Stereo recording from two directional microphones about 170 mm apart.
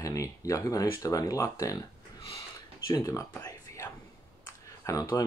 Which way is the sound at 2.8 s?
20° left (ahead or behind).